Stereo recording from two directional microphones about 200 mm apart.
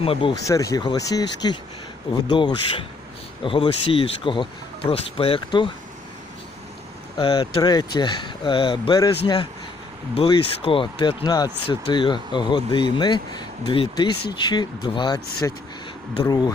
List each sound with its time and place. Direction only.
0.0 s speech: 25° left (ahead or behind)
7.2 s speech: 20° left (ahead or behind)